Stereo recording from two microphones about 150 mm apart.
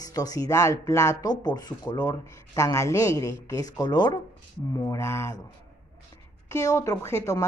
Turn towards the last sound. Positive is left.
turn(degrees=20)  # may be behind; listen again after turning